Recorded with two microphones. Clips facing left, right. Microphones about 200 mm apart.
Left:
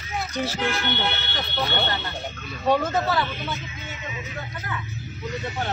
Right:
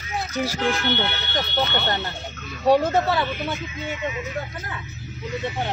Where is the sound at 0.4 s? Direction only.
10° right (ahead or behind).